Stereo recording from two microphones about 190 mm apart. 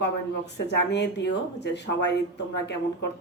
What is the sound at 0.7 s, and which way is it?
A woman's voice, 65° left (ahead or behind).